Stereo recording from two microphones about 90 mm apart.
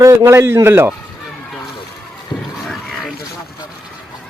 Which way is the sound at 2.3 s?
5° right (ahead or behind).